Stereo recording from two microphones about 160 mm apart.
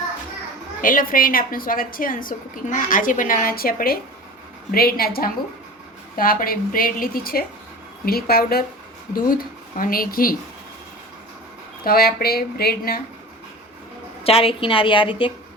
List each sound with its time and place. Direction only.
0.8 s a woman's voice: 60° left (ahead or behind)
11.9 s speech: 70° left (ahead or behind)
14.3 s a woman's voice: 35° left (ahead or behind)